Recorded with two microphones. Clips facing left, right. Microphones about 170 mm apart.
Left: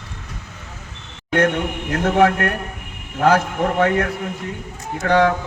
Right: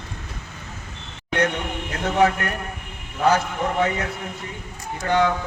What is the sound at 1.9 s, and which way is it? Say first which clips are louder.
Speech: left 4 dB; 55° left (ahead or behind).